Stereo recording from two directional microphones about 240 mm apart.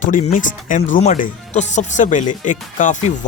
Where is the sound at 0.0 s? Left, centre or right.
Left.